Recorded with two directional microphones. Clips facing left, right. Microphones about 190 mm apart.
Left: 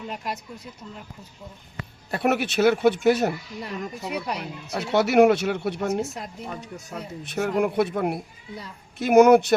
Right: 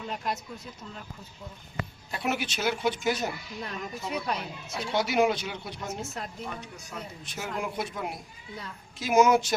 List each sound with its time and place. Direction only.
2.0 s speech: 60° left (ahead or behind)
3.6 s speech: 10° left (ahead or behind)
4.4 s speech: 65° left (ahead or behind)
7.3 s speech: 60° left (ahead or behind)